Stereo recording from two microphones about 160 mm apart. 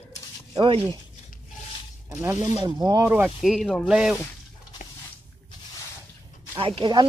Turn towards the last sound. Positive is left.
turn(degrees=-30)  # may be behind; listen again after turning